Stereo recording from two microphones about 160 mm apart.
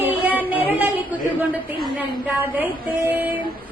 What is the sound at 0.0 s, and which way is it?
Music, 10° right (ahead or behind).